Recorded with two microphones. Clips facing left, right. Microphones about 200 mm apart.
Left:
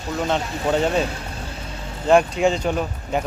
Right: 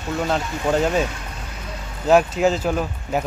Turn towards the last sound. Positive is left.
turn(degrees=-5)  # may be behind; listen again after turning